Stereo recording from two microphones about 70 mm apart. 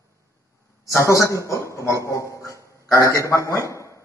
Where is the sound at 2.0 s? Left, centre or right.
Left.